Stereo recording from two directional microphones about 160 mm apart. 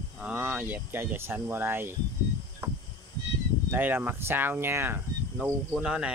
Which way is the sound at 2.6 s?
15° right (ahead or behind).